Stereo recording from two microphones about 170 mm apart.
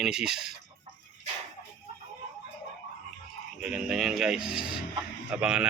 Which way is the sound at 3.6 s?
5° right (ahead or behind).